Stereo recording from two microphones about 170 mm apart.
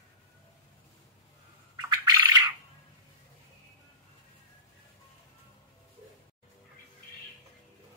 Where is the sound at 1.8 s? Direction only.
25° right (ahead or behind).